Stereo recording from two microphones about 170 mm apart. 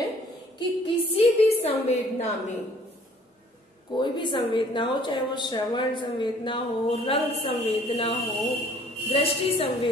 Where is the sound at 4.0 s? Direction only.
25° left (ahead or behind).